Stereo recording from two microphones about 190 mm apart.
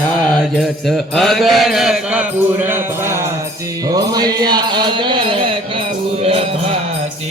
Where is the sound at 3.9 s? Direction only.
20° right (ahead or behind).